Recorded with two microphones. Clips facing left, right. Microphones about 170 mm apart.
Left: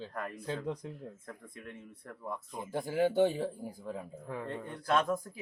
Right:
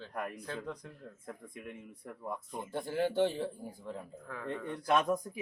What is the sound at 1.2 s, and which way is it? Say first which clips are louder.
Speech: right 2 dB; 10° right (ahead or behind).